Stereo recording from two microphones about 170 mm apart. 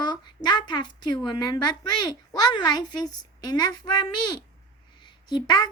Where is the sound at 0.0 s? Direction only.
25° left (ahead or behind).